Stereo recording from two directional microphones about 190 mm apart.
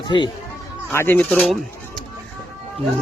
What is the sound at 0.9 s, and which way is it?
Speech, 10° left (ahead or behind).